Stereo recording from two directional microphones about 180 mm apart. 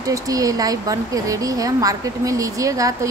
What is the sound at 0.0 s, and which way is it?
Speech, 20° right (ahead or behind).